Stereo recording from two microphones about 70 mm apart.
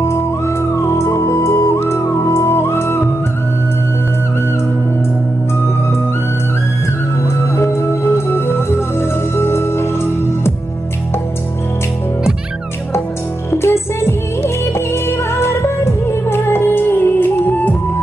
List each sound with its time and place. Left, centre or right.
0.8 s music: left
7.5 s music: left
13.5 s music: left